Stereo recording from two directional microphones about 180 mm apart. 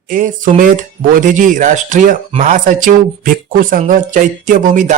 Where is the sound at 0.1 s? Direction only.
50° right (ahead or behind).